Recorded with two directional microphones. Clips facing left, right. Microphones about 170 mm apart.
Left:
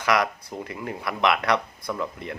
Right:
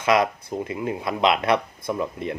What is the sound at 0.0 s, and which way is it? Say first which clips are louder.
Speech: right 3 dB; 20° right (ahead or behind).